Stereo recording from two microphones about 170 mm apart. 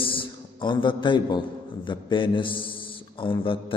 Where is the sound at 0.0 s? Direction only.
30° left (ahead or behind).